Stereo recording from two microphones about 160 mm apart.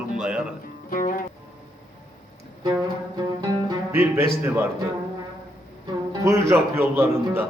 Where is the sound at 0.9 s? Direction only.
60° left (ahead or behind).